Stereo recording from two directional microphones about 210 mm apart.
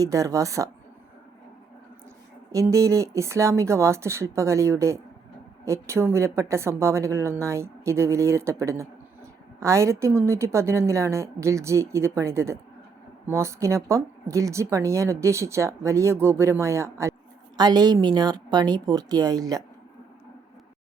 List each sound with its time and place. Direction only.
0.0 s speech: 15° right (ahead or behind)
2.5 s a woman's voice: 15° right (ahead or behind)